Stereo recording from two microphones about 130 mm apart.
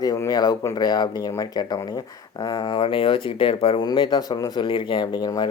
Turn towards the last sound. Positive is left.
turn(degrees=30)  # may be behind; listen again after turning